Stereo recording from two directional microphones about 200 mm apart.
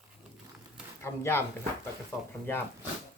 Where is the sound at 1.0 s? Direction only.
10° left (ahead or behind).